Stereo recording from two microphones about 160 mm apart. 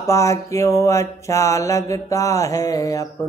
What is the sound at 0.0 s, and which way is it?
Mantra, 15° left (ahead or behind).